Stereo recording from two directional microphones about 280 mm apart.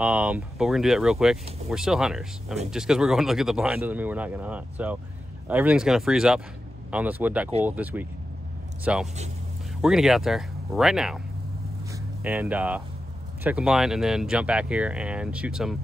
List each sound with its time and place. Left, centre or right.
0.0 s speech: centre
9.0 s speech: right
9.8 s speech: centre